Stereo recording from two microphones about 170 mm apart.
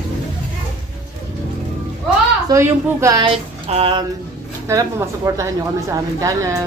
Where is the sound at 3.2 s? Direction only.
35° right (ahead or behind).